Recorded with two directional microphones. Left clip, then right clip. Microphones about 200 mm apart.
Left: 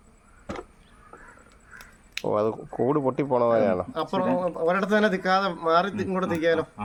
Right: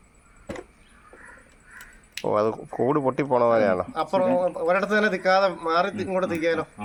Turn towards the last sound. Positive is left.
turn(degrees=60)  # may be behind; listen again after turning